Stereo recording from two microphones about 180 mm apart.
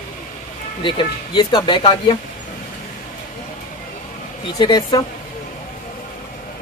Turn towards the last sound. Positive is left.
turn(degrees=20)  # may be behind; listen again after turning